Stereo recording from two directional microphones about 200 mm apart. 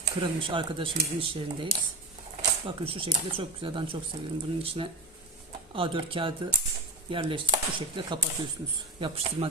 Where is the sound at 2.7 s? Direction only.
25° right (ahead or behind).